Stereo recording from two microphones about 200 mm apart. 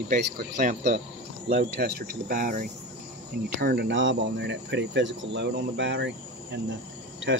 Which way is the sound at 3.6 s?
50° right (ahead or behind).